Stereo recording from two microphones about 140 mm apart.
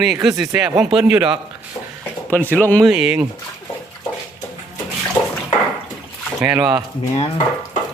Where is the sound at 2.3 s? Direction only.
10° left (ahead or behind).